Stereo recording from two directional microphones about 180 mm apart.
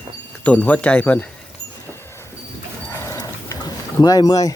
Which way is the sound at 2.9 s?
15° left (ahead or behind).